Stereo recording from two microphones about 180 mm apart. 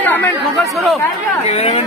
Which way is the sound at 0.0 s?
10° left (ahead or behind).